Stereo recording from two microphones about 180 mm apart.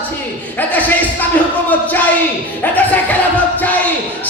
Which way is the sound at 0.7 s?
10° left (ahead or behind).